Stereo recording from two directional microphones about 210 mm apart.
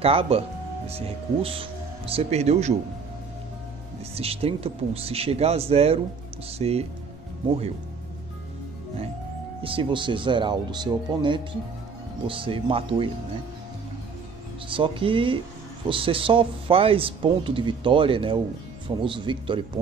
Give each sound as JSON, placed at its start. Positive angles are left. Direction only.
{"t": 0.0, "sound": "speech", "side_deg": -25}
{"t": 4.1, "sound": "speech", "side_deg": -30}
{"t": 9.6, "sound": "speech", "side_deg": -25}
{"t": 14.7, "sound": "speech", "side_deg": -25}